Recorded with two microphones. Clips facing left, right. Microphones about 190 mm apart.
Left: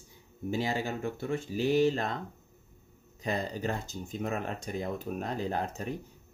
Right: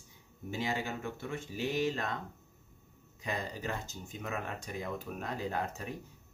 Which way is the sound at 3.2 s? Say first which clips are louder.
Left 5 dB; 35° left (ahead or behind).